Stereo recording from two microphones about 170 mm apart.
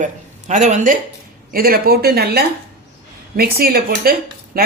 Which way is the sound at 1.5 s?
60° right (ahead or behind).